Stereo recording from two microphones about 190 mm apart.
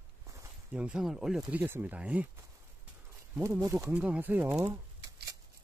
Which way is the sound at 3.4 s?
15° right (ahead or behind).